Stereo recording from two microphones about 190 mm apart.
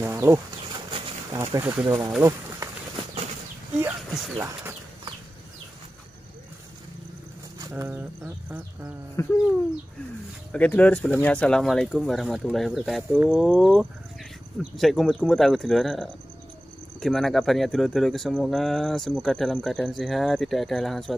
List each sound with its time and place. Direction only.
0.0 s speech: 15° right (ahead or behind)
3.8 s speech: 15° right (ahead or behind)
7.7 s speech: 10° right (ahead or behind)
9.1 s speech: 15° left (ahead or behind)
10.5 s speech: 5° left (ahead or behind)